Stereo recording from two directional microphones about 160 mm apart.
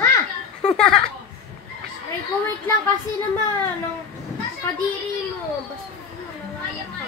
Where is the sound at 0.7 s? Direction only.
5° left (ahead or behind).